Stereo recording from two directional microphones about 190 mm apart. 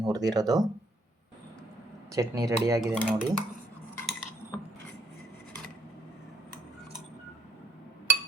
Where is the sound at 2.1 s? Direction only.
20° right (ahead or behind).